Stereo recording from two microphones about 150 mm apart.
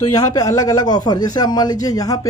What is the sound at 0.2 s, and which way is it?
A man's voice, 25° left (ahead or behind).